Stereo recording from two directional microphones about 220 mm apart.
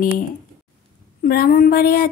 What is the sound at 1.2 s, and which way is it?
Speech, 40° left (ahead or behind).